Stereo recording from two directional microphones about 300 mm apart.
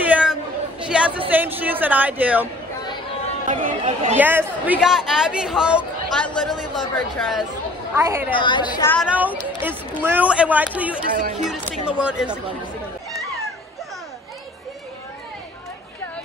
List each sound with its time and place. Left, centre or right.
0.0 s a sound: centre
1.3 s speech: centre
3.4 s speech: right
4.2 s speech: centre
8.3 s a woman's voice: centre
9.0 s speech: centre
11.1 s speech: right
11.4 s speech: centre